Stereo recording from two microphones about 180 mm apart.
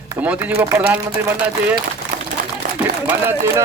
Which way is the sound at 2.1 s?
50° right (ahead or behind).